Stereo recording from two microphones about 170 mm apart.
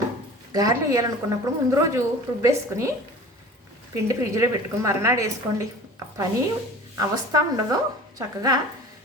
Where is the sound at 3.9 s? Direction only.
15° right (ahead or behind).